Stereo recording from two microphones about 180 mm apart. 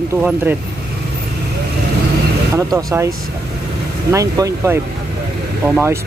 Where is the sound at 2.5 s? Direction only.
15° right (ahead or behind).